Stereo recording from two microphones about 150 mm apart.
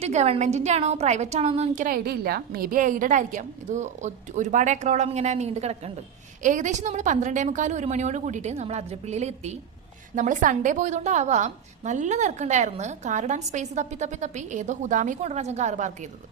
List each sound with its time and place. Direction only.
0.0 s a woman's voice: 45° right (ahead or behind)
6.4 s a woman's voice: 55° right (ahead or behind)